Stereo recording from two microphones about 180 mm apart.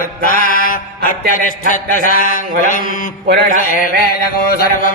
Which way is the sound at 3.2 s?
60° right (ahead or behind).